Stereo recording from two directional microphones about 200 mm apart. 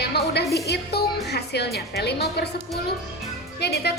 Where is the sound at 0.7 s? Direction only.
55° left (ahead or behind).